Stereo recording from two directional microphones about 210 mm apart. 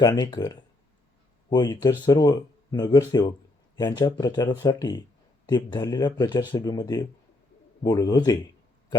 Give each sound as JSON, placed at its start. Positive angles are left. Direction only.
{"t": 0.0, "sound": "a man's voice", "side_deg": 15}